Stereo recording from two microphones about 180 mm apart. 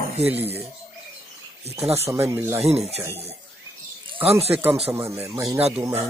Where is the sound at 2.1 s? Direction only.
15° right (ahead or behind).